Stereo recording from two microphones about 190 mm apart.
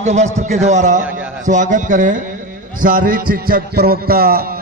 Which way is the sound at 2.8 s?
45° right (ahead or behind).